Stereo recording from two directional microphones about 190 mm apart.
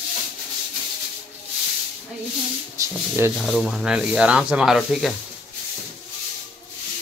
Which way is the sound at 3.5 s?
Centre (ahead or behind).